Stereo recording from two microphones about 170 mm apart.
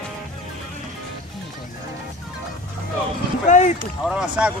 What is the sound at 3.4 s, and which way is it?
Boat, 45° left (ahead or behind).